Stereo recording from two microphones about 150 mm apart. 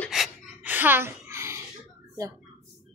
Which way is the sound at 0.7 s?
15° right (ahead or behind).